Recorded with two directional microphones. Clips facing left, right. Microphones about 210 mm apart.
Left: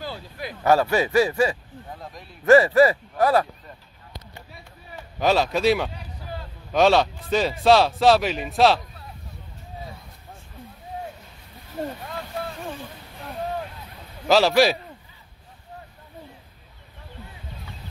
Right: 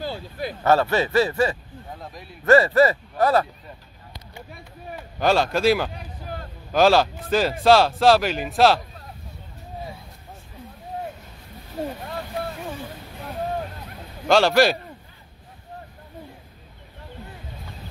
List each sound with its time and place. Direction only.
0.0 s a sound: 30° right (ahead or behind)
0.7 s a man's voice: 10° left (ahead or behind)
5.2 s speech: centre (ahead or behind)
14.2 s speech: centre (ahead or behind)